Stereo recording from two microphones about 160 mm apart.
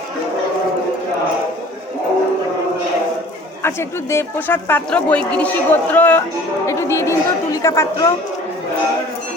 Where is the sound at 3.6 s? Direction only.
15° left (ahead or behind).